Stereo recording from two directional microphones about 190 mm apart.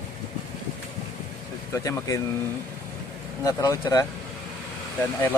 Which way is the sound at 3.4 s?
20° left (ahead or behind).